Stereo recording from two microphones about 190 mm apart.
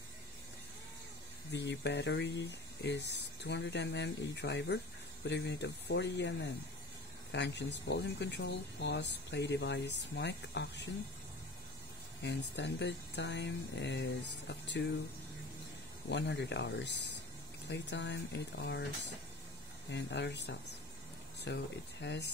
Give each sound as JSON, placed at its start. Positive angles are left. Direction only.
{"t": 1.5, "sound": "speech", "side_deg": 65}
{"t": 12.2, "sound": "speech", "side_deg": 65}
{"t": 16.1, "sound": "speech", "side_deg": 65}
{"t": 19.9, "sound": "speech", "side_deg": 65}